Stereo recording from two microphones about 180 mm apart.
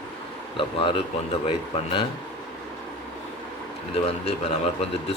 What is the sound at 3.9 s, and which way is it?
Speech, 35° left (ahead or behind).